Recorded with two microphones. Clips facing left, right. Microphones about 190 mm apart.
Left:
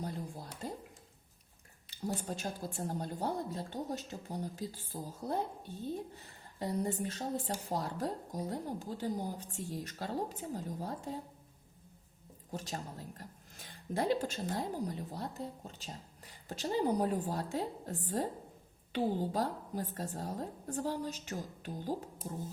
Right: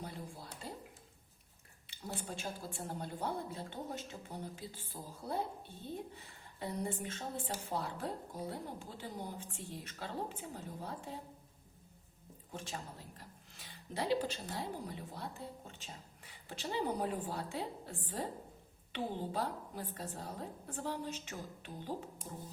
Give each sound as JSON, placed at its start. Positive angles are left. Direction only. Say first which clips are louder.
{"t": 0.0, "sound": "a sound", "louder": "left 5 dB", "side_deg": 45}
{"t": 2.2, "sound": "a woman's voice", "louder": "left 4 dB", "side_deg": 40}
{"t": 12.5, "sound": "a woman's voice", "louder": "left 4 dB", "side_deg": 40}